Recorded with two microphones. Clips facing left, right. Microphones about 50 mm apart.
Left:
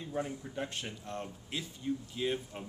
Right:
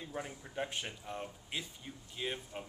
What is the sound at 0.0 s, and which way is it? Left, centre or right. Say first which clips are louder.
Speech: left 6 dB; centre.